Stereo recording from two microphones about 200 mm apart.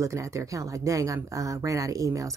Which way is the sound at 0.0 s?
15° right (ahead or behind).